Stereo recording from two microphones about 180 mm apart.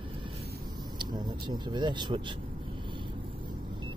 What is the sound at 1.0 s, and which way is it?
Speech, 25° right (ahead or behind).